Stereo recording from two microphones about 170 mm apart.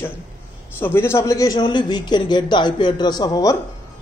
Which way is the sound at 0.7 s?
15° left (ahead or behind).